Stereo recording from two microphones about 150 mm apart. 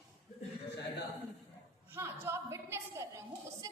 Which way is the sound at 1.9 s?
15° right (ahead or behind).